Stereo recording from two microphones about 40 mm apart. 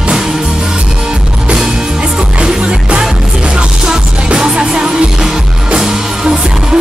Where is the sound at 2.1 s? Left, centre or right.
Centre.